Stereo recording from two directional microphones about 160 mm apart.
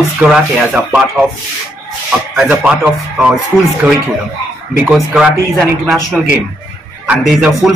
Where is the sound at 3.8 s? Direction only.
15° right (ahead or behind); by 6.0 s centre (ahead or behind).